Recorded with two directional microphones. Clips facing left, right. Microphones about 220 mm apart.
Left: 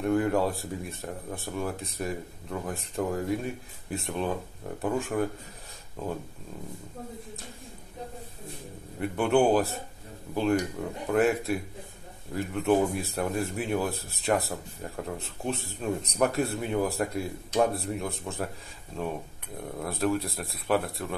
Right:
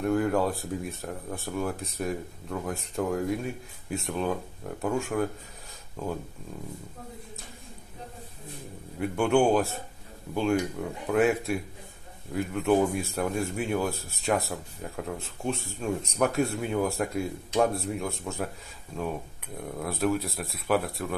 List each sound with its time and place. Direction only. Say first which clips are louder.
0.0 s speech: even; centre (ahead or behind)
9.0 s speech: even; 5° left (ahead or behind)
11.1 s speech: even; centre (ahead or behind)